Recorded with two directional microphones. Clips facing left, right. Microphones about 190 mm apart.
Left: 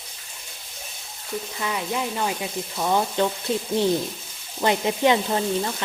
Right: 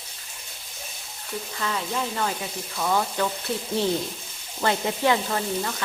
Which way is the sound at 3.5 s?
20° left (ahead or behind).